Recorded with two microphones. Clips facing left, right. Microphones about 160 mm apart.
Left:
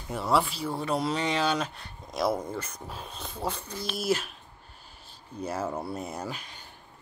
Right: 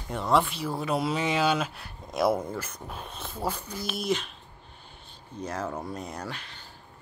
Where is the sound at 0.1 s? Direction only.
5° left (ahead or behind).